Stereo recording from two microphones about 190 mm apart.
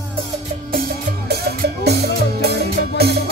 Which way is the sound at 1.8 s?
60° right (ahead or behind).